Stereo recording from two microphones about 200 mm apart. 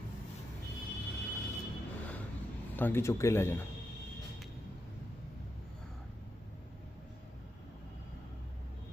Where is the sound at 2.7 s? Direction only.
10° left (ahead or behind).